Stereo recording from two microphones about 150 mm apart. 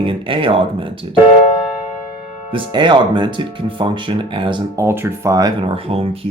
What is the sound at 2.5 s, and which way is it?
Speech, 30° right (ahead or behind).